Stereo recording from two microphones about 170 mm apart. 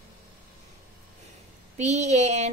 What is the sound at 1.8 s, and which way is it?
Speech, 40° right (ahead or behind).